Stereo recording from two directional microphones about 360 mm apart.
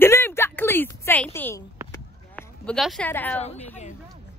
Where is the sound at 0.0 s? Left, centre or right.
Centre.